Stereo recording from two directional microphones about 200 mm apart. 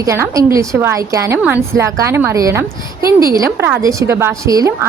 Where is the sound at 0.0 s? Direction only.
15° right (ahead or behind).